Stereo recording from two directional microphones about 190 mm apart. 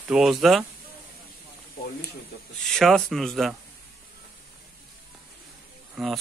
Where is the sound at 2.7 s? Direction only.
Centre (ahead or behind).